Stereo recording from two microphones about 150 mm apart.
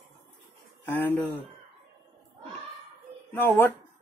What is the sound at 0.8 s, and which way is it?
Speech, 15° left (ahead or behind).